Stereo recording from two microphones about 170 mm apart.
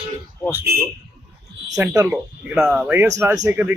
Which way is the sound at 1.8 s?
15° right (ahead or behind).